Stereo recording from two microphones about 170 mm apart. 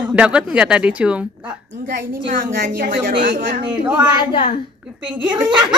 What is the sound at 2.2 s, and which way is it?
A woman's voice, 60° right (ahead or behind).